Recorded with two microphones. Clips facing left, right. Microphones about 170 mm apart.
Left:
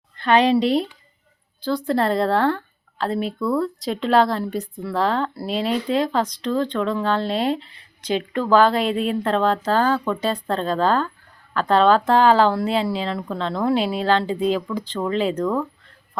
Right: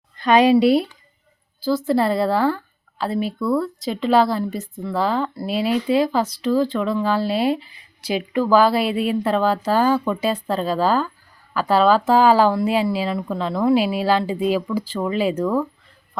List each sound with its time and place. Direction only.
0.2 s speech: 10° right (ahead or behind)